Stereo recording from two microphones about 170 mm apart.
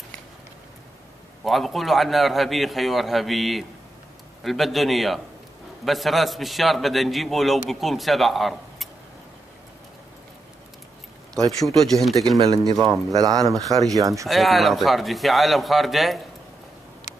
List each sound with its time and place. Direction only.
1.4 s a man's voice: centre (ahead or behind)
11.6 s a man's voice: centre (ahead or behind)
12.4 s speech: 20° right (ahead or behind)
14.2 s a man's voice: centre (ahead or behind)